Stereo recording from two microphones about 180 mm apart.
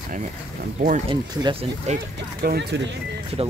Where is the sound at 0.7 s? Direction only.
40° right (ahead or behind).